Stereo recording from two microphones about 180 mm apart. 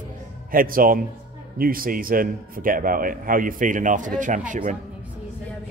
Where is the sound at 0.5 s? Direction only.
50° right (ahead or behind).